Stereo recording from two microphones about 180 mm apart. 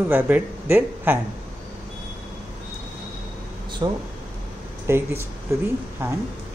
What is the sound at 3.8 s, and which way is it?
Speech, 25° right (ahead or behind).